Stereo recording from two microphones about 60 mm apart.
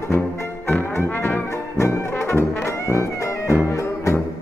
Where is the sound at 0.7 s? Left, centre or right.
Left.